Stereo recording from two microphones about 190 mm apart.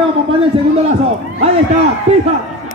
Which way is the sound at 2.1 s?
35° right (ahead or behind).